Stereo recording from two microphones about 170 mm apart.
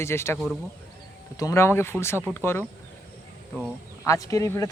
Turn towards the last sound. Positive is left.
turn(degrees=20)  # may be behind; listen again after turning